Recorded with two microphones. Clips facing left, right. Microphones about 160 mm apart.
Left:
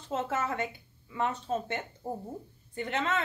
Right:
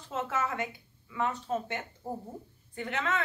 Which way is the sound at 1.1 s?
25° left (ahead or behind).